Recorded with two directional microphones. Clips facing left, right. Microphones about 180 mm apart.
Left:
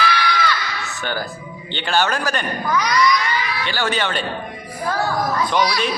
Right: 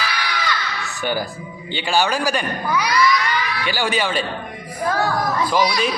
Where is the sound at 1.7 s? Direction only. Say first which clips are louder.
Right 1 dB; 10° right (ahead or behind).